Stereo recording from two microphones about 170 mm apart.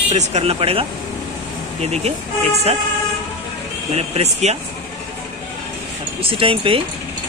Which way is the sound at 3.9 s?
40° right (ahead or behind).